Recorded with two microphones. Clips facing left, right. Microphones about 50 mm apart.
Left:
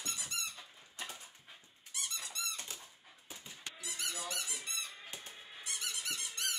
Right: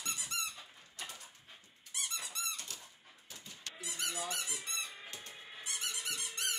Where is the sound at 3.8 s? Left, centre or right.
Right.